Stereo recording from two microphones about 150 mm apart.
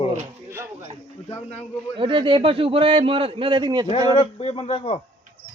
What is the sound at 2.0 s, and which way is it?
A man's voice, 35° right (ahead or behind).